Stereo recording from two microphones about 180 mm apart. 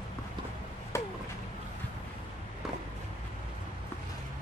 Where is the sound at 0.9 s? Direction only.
15° left (ahead or behind).